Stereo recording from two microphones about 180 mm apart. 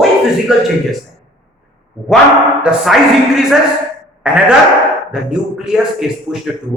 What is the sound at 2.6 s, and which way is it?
Speech, centre (ahead or behind).